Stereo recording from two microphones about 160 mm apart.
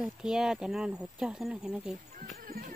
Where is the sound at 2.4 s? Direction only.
65° right (ahead or behind).